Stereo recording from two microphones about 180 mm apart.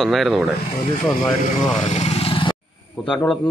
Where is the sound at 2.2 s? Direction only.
30° left (ahead or behind).